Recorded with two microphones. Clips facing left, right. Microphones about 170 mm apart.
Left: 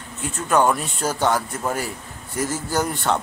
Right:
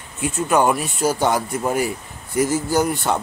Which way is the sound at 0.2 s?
10° right (ahead or behind).